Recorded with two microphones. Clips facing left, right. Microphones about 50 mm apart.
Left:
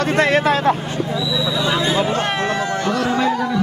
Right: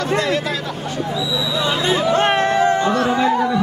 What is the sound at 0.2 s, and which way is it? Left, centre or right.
Speech, left.